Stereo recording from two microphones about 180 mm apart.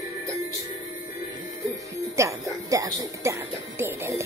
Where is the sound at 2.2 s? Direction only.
15° right (ahead or behind).